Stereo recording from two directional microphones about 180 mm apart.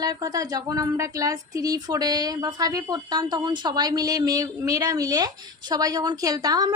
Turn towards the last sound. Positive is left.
turn(degrees=-20)  # may be behind; listen again after turning